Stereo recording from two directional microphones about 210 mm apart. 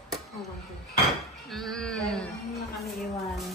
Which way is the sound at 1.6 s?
5° left (ahead or behind).